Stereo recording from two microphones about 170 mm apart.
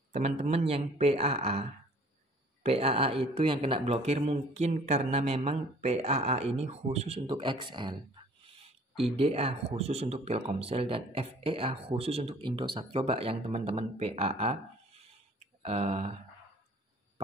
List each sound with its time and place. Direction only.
0.1 s speech: 40° right (ahead or behind)
9.1 s speech: 35° right (ahead or behind)
15.3 s a sound: 40° right (ahead or behind)